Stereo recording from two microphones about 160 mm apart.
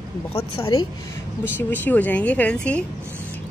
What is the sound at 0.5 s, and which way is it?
A woman's voice, 20° left (ahead or behind).